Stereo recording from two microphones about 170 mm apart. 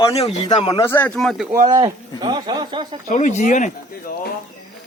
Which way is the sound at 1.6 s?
25° right (ahead or behind).